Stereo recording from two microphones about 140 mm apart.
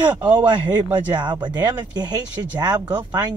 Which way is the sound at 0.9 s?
30° right (ahead or behind).